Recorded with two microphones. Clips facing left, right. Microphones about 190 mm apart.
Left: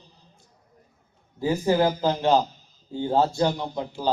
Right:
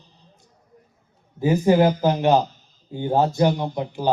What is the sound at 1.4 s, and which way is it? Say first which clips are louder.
A man's voice: right 4 dB; 20° right (ahead or behind).